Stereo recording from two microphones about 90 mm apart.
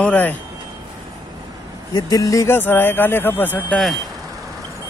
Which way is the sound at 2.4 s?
25° left (ahead or behind).